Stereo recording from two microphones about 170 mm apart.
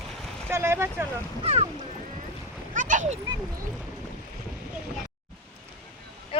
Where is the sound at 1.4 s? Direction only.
40° right (ahead or behind).